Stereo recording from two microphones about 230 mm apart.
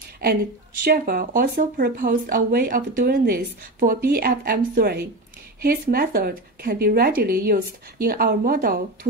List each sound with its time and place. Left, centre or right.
0.8 s speech: right